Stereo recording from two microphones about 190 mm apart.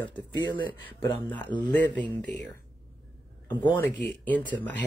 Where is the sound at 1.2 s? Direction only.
10° left (ahead or behind).